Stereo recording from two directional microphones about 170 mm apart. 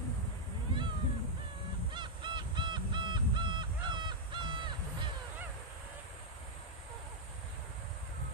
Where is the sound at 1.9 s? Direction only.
25° right (ahead or behind).